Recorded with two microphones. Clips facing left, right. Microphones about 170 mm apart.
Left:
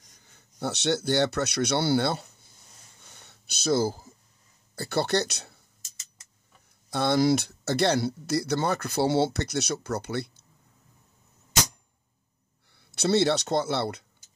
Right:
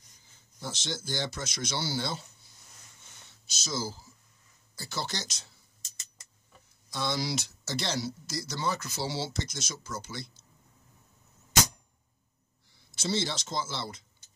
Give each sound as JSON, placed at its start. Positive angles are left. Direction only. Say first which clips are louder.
{"t": 0.2, "sound": "speech", "louder": "left 9 dB", "side_deg": 65}
{"t": 3.3, "sound": "a sound", "louder": "left 13 dB", "side_deg": 60}
{"t": 4.7, "sound": "speech", "louder": "left 11 dB", "side_deg": 60}
{"t": 6.9, "sound": "speech", "louder": "left 10 dB", "side_deg": 55}
{"t": 12.7, "sound": "speech", "louder": "left 8 dB", "side_deg": 65}